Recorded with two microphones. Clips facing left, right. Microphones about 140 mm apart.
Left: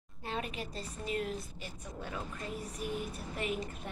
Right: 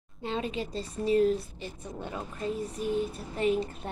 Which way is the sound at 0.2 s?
25° right (ahead or behind).